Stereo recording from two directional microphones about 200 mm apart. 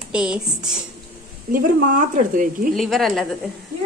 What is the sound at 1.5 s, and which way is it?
Speech, 40° right (ahead or behind).